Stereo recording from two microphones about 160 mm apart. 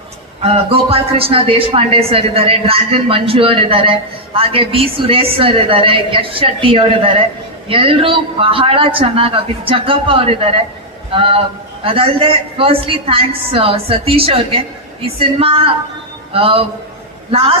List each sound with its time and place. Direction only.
0.4 s speech: 35° right (ahead or behind)